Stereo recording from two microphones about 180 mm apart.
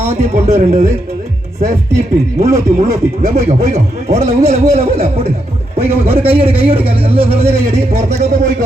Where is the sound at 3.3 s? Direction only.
35° right (ahead or behind).